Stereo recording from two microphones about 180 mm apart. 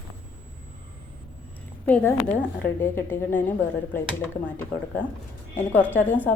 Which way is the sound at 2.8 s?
10° left (ahead or behind).